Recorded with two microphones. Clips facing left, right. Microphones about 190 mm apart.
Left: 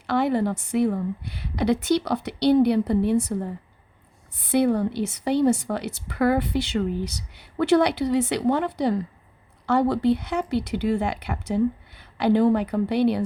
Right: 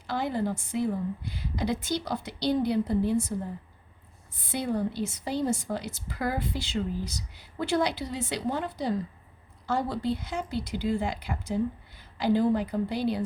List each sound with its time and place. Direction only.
0.1 s a woman's voice: 65° left (ahead or behind)
4.4 s a woman's voice: 65° left (ahead or behind)